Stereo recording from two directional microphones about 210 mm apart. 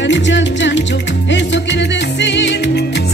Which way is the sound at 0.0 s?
60° left (ahead or behind).